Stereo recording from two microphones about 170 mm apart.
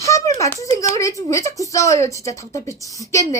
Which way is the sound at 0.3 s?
20° left (ahead or behind).